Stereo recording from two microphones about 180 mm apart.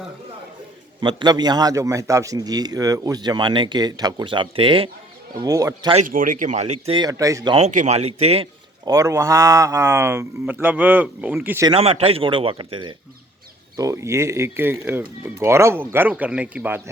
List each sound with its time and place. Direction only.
1.0 s speech: 25° right (ahead or behind)
5.4 s speech: 20° right (ahead or behind)
6.1 s speech: 50° right (ahead or behind); by 7.5 s 20° right (ahead or behind)
7.5 s speech: 40° right (ahead or behind)
8.8 s a man's voice: 20° right (ahead or behind)
11.7 s a man's voice: 35° right (ahead or behind); by 16.9 s 10° right (ahead or behind)